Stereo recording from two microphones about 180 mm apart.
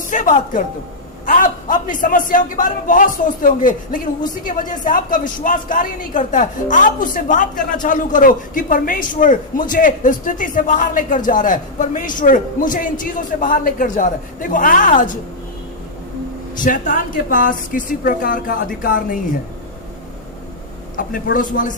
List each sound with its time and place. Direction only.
0.1 s a woman's voice: 45° left (ahead or behind)
16.6 s a woman's voice: 45° left (ahead or behind)
21.3 s a woman's voice: 50° left (ahead or behind)